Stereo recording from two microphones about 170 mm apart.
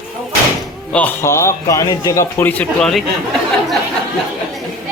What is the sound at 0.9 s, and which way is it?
A man's voice, 10° left (ahead or behind).